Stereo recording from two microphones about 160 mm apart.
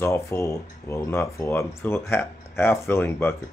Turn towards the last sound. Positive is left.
turn(degrees=15)  # may be behind; listen again after turning